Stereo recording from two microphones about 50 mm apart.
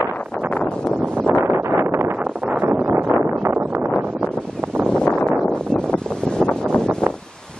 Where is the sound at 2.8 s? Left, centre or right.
Right.